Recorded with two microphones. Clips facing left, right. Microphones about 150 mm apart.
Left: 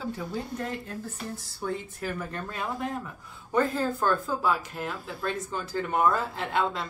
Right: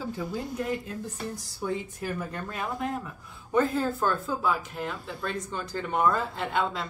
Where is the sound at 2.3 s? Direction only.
5° right (ahead or behind).